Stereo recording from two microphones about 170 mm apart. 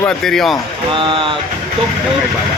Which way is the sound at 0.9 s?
30° right (ahead or behind).